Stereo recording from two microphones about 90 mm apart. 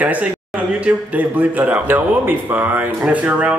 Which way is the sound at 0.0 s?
15° right (ahead or behind).